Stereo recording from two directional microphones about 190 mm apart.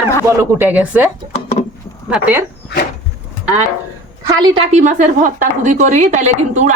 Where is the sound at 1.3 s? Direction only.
35° left (ahead or behind).